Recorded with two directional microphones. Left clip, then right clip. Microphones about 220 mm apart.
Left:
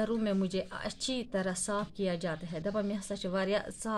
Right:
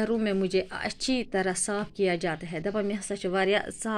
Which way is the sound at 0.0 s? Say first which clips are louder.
Right 5 dB; 10° right (ahead or behind).